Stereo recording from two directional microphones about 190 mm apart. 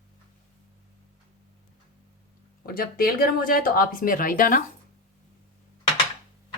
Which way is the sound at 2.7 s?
50° left (ahead or behind).